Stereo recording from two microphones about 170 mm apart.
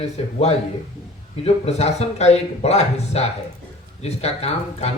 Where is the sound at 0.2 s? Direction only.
35° left (ahead or behind).